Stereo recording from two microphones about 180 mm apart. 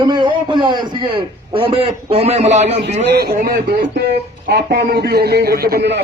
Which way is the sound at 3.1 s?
60° right (ahead or behind).